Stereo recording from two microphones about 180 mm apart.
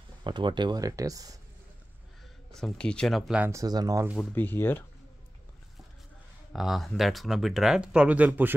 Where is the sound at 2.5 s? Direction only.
5° left (ahead or behind).